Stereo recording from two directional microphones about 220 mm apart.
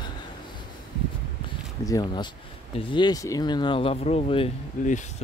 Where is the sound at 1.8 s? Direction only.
15° left (ahead or behind).